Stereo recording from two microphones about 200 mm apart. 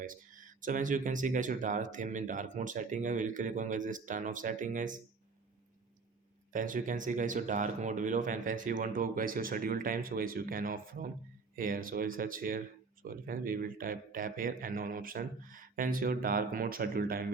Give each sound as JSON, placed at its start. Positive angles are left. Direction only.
{"t": 0.0, "sound": "speech", "side_deg": -40}
{"t": 6.5, "sound": "speech", "side_deg": -40}